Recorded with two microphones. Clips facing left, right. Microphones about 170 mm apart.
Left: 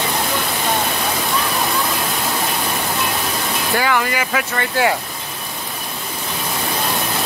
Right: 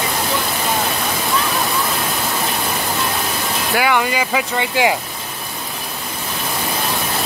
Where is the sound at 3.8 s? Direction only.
15° right (ahead or behind).